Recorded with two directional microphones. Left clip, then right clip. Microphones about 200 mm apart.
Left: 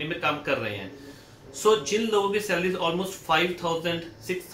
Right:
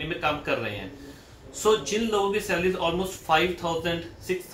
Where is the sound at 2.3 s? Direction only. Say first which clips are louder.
Even; 5° right (ahead or behind).